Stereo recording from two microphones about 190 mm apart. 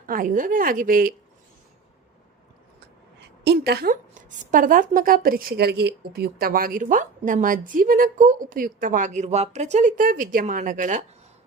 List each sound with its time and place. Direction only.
0.1 s a woman's voice: 45° right (ahead or behind)
3.4 s a woman's voice: 60° right (ahead or behind); by 11.0 s 45° right (ahead or behind)